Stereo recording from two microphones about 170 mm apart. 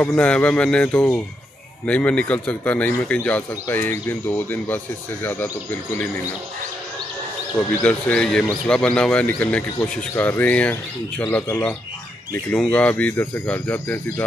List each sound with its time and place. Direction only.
0.0 s speech: 10° left (ahead or behind)
7.5 s speech: 5° left (ahead or behind)